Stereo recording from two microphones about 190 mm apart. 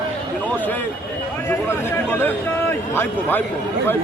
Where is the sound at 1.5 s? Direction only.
10° left (ahead or behind).